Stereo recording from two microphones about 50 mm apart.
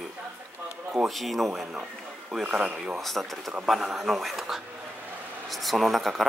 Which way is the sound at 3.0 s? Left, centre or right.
Centre.